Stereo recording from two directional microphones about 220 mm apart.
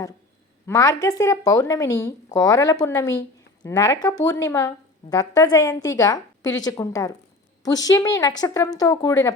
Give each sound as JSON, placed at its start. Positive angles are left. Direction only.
{"t": 0.7, "sound": "speech", "side_deg": 15}